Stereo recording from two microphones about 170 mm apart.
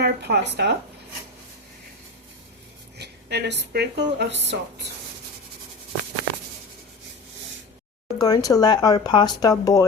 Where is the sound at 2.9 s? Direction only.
80° right.